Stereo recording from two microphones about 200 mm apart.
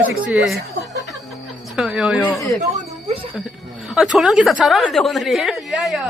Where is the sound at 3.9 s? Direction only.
Centre (ahead or behind).